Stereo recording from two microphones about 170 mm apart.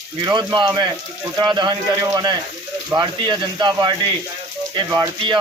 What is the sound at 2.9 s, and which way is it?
Speech, 25° right (ahead or behind).